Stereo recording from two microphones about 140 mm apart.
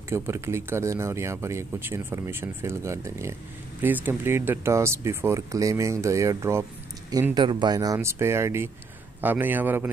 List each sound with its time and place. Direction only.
0.1 s speech: 20° right (ahead or behind)
7.3 s a man's voice: 30° right (ahead or behind); by 9.8 s 15° right (ahead or behind)